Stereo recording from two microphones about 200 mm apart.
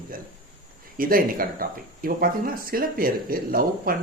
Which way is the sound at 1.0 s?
45° right (ahead or behind).